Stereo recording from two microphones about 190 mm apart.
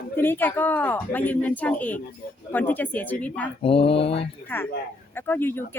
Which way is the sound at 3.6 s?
30° left (ahead or behind).